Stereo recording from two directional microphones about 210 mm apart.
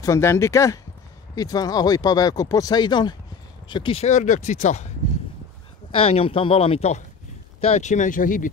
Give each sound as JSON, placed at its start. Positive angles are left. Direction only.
{"t": 0.0, "sound": "speech", "side_deg": 15}
{"t": 5.9, "sound": "speech", "side_deg": 25}